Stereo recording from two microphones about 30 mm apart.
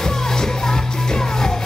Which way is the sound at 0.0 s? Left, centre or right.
Centre.